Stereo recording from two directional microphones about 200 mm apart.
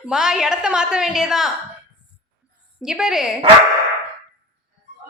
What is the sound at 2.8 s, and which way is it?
Speech, 5° right (ahead or behind).